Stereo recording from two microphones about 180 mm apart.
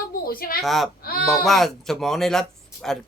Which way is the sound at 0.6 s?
Centre (ahead or behind).